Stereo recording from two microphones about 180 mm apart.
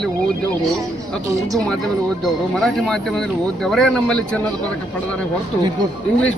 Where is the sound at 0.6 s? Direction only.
Centre (ahead or behind).